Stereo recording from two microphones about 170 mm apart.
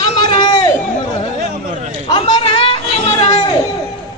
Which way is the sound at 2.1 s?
35° left (ahead or behind).